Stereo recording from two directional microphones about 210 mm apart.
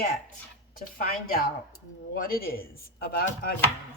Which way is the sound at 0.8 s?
40° left (ahead or behind).